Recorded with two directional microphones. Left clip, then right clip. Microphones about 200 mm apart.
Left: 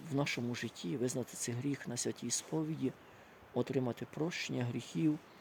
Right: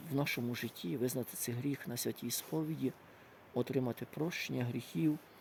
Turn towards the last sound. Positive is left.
turn(degrees=-10)  # may be behind; listen again after turning